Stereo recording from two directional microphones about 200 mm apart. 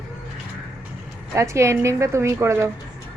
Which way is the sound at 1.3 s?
15° right (ahead or behind).